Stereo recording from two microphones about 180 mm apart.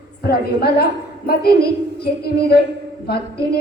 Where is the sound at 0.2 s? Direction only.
60° left (ahead or behind).